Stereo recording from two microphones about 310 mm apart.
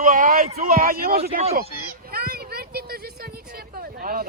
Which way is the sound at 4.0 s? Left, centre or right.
Right.